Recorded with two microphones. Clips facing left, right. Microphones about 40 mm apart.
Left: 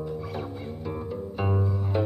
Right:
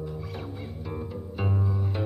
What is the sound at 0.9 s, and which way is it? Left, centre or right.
Music, centre.